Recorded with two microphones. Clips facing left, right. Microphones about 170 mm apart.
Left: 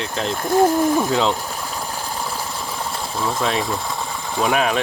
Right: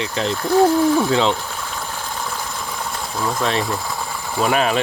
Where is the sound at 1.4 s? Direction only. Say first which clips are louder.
Left 1 dB; 10° left (ahead or behind).